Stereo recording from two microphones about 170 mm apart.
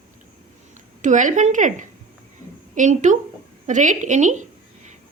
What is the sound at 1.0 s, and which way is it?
A woman's voice, 45° right (ahead or behind).